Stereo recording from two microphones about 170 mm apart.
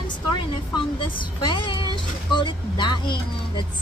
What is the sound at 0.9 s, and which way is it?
Speech, 30° left (ahead or behind).